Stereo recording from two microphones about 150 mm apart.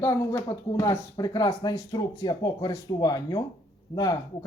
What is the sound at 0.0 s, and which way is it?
Speech, 15° left (ahead or behind).